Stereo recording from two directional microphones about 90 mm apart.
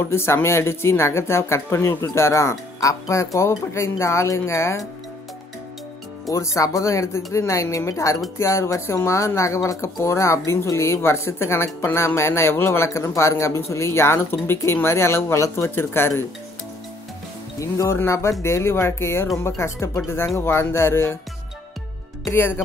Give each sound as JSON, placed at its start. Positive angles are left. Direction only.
{"t": 0.0, "sound": "speech", "side_deg": 30}
{"t": 6.3, "sound": "speech", "side_deg": 35}
{"t": 17.6, "sound": "speech", "side_deg": 35}
{"t": 22.3, "sound": "speech", "side_deg": 25}